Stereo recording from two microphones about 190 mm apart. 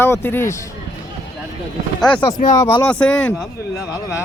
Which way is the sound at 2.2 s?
40° left (ahead or behind).